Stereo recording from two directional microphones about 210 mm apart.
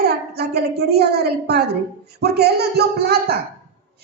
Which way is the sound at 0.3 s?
50° right (ahead or behind).